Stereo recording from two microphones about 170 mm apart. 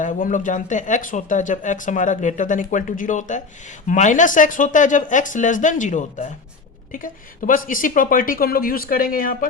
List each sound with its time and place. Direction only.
0.0 s speech: 50° left (ahead or behind)